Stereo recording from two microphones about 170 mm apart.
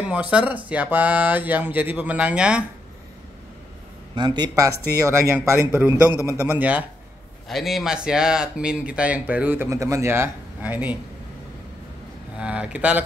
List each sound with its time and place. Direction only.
0.0 s speech: 10° right (ahead or behind)
4.1 s speech: 25° right (ahead or behind); by 11.0 s 10° right (ahead or behind)
12.4 s speech: 5° right (ahead or behind)